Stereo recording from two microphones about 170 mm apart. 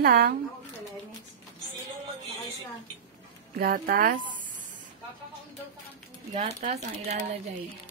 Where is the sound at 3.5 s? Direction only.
60° right (ahead or behind).